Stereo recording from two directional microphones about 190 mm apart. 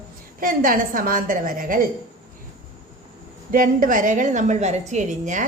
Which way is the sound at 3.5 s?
45° right (ahead or behind).